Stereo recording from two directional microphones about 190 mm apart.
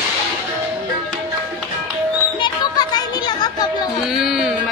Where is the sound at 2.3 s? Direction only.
25° left (ahead or behind).